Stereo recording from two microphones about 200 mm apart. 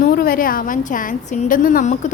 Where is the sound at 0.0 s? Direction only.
45° left (ahead or behind).